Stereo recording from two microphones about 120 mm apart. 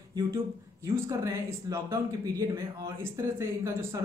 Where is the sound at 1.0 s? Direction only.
25° right (ahead or behind).